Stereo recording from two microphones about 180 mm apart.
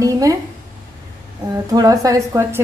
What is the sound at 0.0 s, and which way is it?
Speech, 20° right (ahead or behind).